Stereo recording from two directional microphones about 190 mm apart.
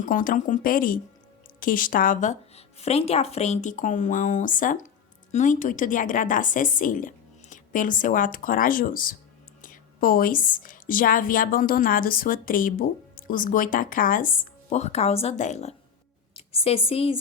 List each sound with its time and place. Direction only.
0.0 s a woman's voice: 45° left (ahead or behind)